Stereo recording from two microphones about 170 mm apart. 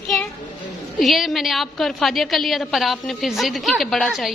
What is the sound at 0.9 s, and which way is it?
A woman's voice, centre (ahead or behind).